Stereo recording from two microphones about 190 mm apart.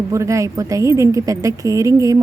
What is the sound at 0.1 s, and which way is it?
A woman's voice, 15° right (ahead or behind).